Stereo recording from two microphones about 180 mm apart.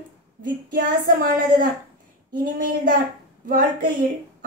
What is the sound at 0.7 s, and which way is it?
Speech, 50° right (ahead or behind).